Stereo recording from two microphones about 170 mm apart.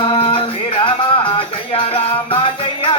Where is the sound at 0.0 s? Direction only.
30° left (ahead or behind).